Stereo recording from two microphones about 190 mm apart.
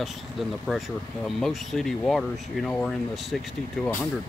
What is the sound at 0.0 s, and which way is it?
Speech, centre (ahead or behind).